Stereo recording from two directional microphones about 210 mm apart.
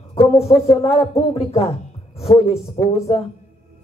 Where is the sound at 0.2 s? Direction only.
30° left (ahead or behind).